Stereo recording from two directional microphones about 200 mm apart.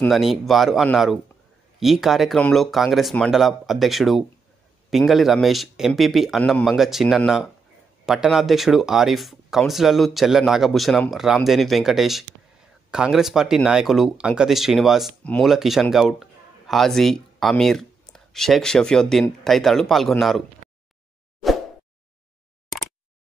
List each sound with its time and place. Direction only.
0.1 s speech: centre (ahead or behind)